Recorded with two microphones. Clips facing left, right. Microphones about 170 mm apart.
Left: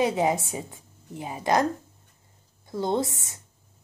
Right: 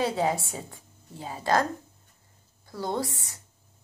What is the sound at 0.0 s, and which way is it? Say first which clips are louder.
A woman's voice: left 3 dB; 15° left (ahead or behind).